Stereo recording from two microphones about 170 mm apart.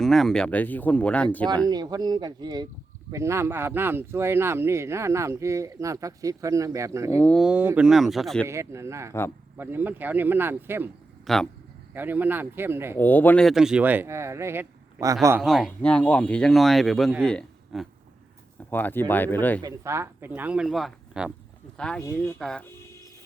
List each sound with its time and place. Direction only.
0.0 s speech: centre (ahead or behind)
1.6 s speech: 25° right (ahead or behind)
7.2 s speech: 5° left (ahead or behind)
7.4 s speech: 10° right (ahead or behind)
8.4 s speech: 15° right (ahead or behind)
11.3 s speech: centre (ahead or behind)
11.9 s speech: 10° right (ahead or behind)
13.0 s speech: 10° left (ahead or behind); by 15.4 s 20° right (ahead or behind)
15.4 s speech: centre (ahead or behind)
19.6 s speech: 15° right (ahead or behind); by 22.6 s 5° left (ahead or behind)